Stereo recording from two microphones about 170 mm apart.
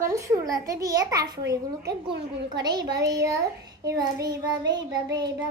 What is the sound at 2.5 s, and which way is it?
A child's voice, 25° right (ahead or behind).